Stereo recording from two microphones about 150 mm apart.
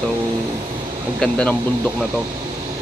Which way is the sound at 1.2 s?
5° left (ahead or behind).